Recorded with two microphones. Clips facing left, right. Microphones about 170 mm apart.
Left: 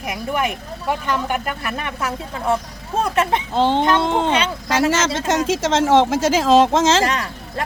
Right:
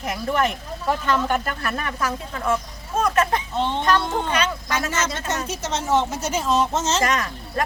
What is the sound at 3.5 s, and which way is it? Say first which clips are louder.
Speech: left 8 dB; 90° left.